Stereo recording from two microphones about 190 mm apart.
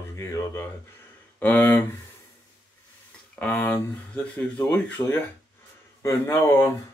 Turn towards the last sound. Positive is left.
turn(degrees=15)  # may be behind; listen again after turning